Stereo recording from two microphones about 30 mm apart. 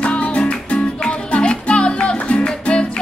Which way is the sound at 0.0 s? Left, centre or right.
Left.